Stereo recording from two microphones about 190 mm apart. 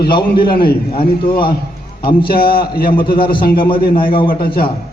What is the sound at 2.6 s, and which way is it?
A man's voice, 50° left (ahead or behind).